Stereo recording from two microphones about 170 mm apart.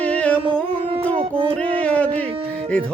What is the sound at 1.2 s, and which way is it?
Music, 35° right (ahead or behind).